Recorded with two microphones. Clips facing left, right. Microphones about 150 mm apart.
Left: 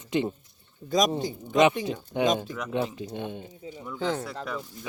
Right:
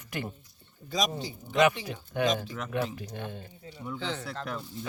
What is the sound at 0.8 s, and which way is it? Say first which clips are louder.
Speech: left 6 dB; 45° left (ahead or behind).